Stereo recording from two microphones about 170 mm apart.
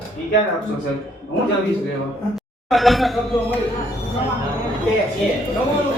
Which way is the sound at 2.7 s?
Centre (ahead or behind).